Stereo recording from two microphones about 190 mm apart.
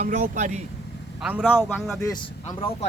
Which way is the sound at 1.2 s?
5° right (ahead or behind).